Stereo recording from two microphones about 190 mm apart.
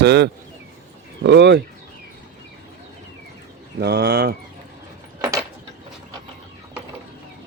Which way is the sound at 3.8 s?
60° right (ahead or behind).